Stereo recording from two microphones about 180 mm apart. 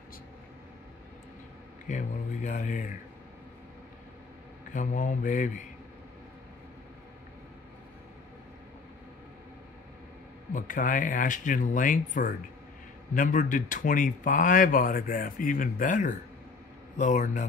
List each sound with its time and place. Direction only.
1.9 s speech: 45° left (ahead or behind)
4.7 s speech: 45° left (ahead or behind)
10.5 s speech: 50° left (ahead or behind)